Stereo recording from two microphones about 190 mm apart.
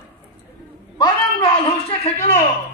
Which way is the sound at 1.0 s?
25° left (ahead or behind).